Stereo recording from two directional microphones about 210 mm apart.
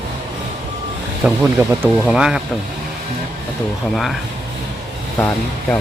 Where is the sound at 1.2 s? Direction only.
10° right (ahead or behind).